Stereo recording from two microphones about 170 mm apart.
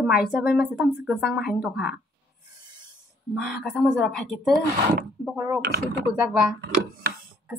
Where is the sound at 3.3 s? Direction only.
Centre (ahead or behind).